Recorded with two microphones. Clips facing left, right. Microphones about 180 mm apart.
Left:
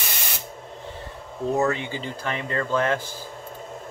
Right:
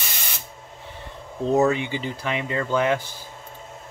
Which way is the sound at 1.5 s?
20° right (ahead or behind).